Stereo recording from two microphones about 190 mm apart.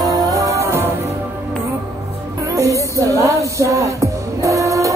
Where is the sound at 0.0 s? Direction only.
20° right (ahead or behind).